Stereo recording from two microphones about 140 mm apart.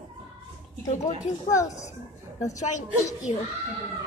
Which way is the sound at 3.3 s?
50° left (ahead or behind).